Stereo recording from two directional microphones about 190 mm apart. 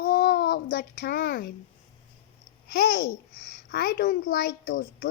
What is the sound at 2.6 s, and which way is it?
Babbling, 60° left (ahead or behind).